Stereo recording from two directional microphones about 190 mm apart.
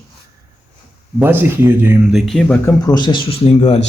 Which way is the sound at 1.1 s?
10° right (ahead or behind).